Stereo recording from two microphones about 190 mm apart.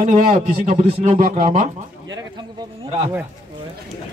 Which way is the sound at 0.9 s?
35° right (ahead or behind).